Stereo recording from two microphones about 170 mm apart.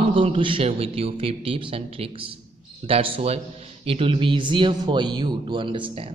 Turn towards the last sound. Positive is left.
turn(degrees=-30)  # may be behind; listen again after turning